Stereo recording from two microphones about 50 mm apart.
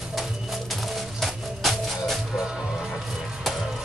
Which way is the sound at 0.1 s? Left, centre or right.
Centre.